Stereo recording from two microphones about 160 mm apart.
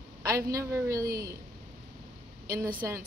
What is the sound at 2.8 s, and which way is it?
Speech, 20° right (ahead or behind).